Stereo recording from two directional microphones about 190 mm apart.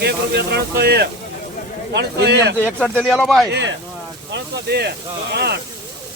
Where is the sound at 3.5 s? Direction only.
65° right (ahead or behind).